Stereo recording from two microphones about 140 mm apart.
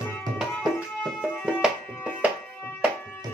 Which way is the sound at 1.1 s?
5° right (ahead or behind).